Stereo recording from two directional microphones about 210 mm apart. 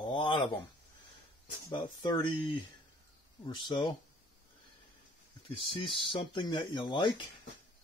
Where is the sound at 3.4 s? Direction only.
20° left (ahead or behind).